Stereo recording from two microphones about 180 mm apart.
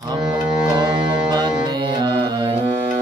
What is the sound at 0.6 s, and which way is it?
Music, 25° right (ahead or behind).